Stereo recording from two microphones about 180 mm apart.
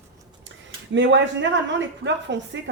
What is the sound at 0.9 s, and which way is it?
Speech, 85° right.